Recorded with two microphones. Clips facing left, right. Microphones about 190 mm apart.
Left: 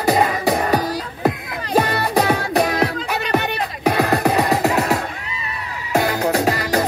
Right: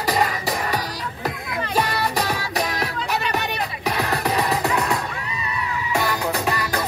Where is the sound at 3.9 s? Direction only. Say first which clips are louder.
Left 7 dB; 50° left (ahead or behind).